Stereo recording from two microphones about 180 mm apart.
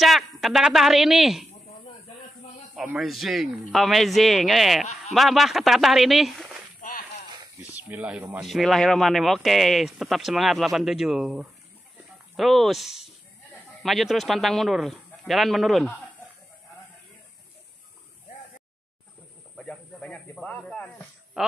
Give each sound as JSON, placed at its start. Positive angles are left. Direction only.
{"t": 0.0, "sound": "speech", "side_deg": 0}
{"t": 2.7, "sound": "speech", "side_deg": 0}
{"t": 6.8, "sound": "a sound", "side_deg": 45}
{"t": 7.6, "sound": "speech", "side_deg": -10}
{"t": 19.5, "sound": "snake", "side_deg": 5}
{"t": 21.4, "sound": "a woman's voice", "side_deg": -5}